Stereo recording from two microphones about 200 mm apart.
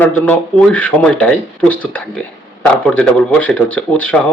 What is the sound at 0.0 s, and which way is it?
A man's voice, 5° left (ahead or behind).